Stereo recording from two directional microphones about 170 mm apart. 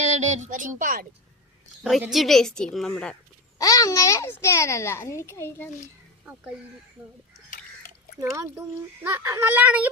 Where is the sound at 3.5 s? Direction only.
20° left (ahead or behind).